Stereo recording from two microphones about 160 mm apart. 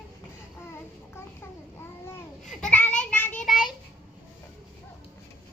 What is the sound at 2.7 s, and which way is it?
Child singing, 10° left (ahead or behind).